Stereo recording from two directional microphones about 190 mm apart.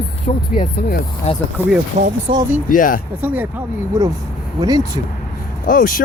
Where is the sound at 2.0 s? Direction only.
40° right (ahead or behind).